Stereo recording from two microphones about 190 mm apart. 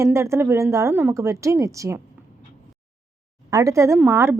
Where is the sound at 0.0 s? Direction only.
15° right (ahead or behind).